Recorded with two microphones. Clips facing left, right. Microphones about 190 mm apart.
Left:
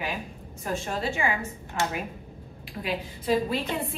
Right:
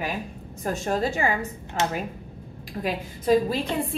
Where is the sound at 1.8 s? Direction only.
20° right (ahead or behind).